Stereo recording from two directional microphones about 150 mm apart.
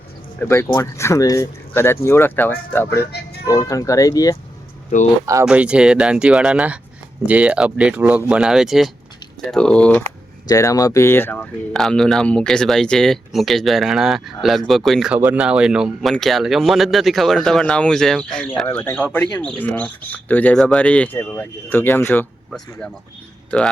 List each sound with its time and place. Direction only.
0.3 s speech: 15° left (ahead or behind)
5.2 s speech: 20° right (ahead or behind)
5.5 s speech: 5° right (ahead or behind); by 10.1 s 10° left (ahead or behind)
10.4 s speech: 20° left (ahead or behind)
11.7 s speech: 5° left (ahead or behind)